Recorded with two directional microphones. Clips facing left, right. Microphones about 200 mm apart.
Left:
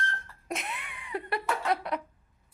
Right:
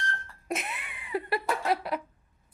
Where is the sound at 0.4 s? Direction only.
5° right (ahead or behind).